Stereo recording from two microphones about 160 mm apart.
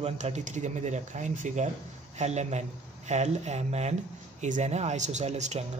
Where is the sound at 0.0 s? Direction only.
45° right (ahead or behind).